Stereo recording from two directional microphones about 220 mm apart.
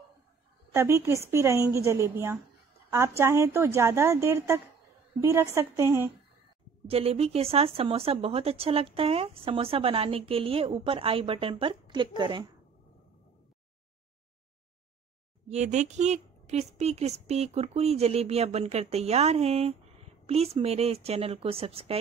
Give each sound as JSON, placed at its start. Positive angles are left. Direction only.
{"t": 0.7, "sound": "a woman's voice", "side_deg": -10}
{"t": 6.9, "sound": "speech", "side_deg": -25}
{"t": 15.5, "sound": "speech", "side_deg": -30}